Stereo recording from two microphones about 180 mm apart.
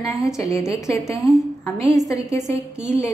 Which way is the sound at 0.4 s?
15° left (ahead or behind).